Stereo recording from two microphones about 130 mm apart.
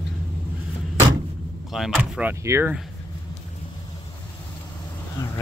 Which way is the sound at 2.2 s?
15° right (ahead or behind).